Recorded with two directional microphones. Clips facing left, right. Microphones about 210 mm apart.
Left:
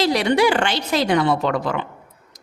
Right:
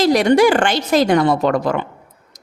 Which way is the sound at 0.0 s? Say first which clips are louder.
Right 5 dB; 45° right (ahead or behind).